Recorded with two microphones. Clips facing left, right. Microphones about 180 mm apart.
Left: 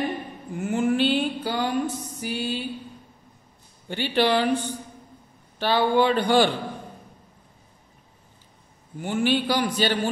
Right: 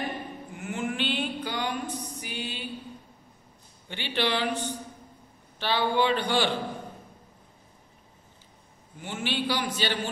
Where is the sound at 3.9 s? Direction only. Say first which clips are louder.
Left 7 dB; 40° left (ahead or behind).